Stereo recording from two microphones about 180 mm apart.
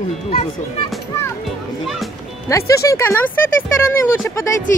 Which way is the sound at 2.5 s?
15° left (ahead or behind).